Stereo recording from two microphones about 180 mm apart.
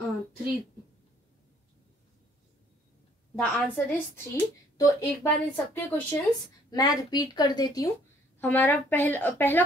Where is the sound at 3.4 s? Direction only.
10° left (ahead or behind).